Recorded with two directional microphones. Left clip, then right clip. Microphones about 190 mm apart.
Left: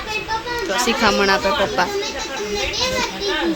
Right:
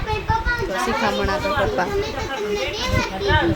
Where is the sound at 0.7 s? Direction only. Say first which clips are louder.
Left 7 dB; 15° left (ahead or behind).